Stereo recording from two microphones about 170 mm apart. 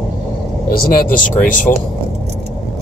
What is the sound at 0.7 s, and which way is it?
Speech, 50° left (ahead or behind).